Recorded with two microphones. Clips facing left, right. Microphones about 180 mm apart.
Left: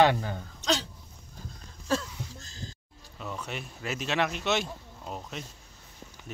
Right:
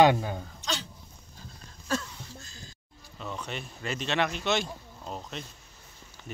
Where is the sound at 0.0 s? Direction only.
15° right (ahead or behind).